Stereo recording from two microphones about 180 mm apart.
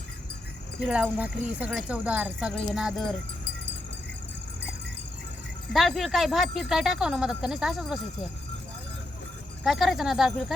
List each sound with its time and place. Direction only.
0.8 s speech: 5° right (ahead or behind)
5.7 s speech: centre (ahead or behind)
9.6 s speech: centre (ahead or behind)